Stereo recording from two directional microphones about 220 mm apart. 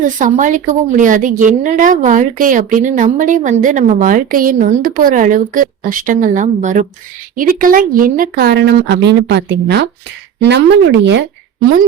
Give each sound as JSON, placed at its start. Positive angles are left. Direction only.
{"t": 0.0, "sound": "a woman's voice", "side_deg": -35}